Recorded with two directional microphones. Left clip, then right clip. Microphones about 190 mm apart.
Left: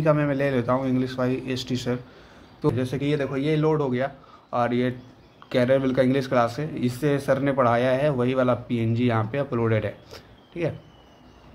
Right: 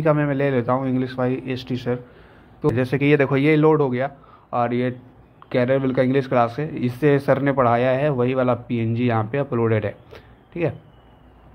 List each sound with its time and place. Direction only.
0.0 s speech: 10° right (ahead or behind)
2.7 s a man's voice: 25° right (ahead or behind)